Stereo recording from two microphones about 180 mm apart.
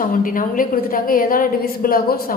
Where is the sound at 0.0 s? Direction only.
50° left (ahead or behind).